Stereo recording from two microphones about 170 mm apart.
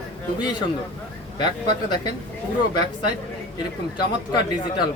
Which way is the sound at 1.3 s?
25° left (ahead or behind).